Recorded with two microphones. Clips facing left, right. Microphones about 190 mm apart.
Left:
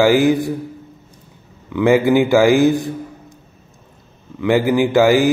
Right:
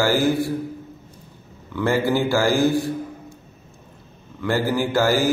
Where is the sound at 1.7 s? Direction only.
15° left (ahead or behind).